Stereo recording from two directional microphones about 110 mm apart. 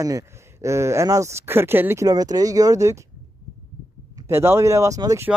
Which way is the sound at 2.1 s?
35° right (ahead or behind).